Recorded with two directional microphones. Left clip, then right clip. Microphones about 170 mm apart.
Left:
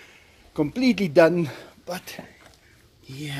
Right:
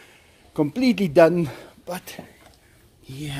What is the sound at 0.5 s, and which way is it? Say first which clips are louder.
Speech: right 1 dB; 10° right (ahead or behind).